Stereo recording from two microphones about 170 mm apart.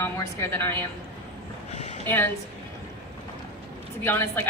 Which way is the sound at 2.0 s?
10° left (ahead or behind).